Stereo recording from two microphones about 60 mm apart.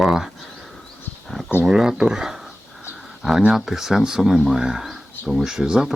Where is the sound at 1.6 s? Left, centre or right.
Centre.